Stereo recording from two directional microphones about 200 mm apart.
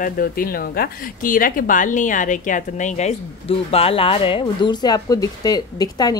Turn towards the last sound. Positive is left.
turn(degrees=20)  # may be behind; listen again after turning